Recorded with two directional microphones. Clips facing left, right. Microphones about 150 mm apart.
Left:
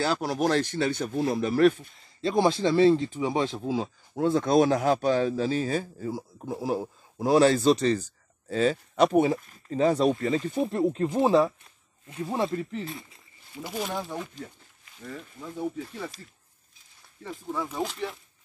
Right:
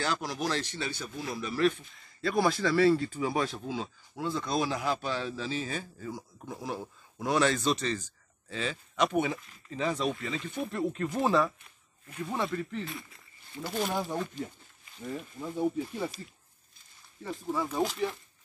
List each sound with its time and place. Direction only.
0.0 s speech: 40° left (ahead or behind)
2.0 s speech: 25° left (ahead or behind)
4.2 s a man's voice: 55° left (ahead or behind); by 12.9 s 30° left (ahead or behind)
13.6 s speech: 10° left (ahead or behind)
15.0 s speech: 15° right (ahead or behind)
17.2 s speech: 5° right (ahead or behind)